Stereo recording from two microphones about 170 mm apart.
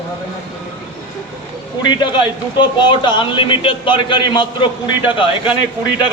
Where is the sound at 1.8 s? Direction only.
30° left (ahead or behind).